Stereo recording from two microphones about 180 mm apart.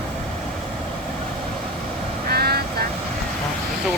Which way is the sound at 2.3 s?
60° right (ahead or behind).